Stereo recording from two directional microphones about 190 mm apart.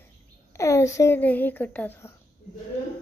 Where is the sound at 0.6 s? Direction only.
15° left (ahead or behind).